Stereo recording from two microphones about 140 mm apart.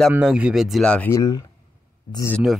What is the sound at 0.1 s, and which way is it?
Speech, 5° right (ahead or behind).